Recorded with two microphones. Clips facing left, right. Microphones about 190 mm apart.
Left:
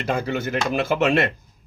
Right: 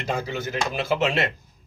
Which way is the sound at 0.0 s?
55° left (ahead or behind).